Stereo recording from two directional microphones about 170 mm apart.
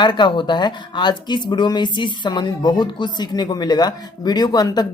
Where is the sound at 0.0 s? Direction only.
25° left (ahead or behind).